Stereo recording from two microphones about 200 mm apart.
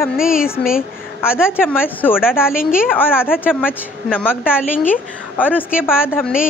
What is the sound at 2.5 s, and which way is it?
Speech, 45° left (ahead or behind).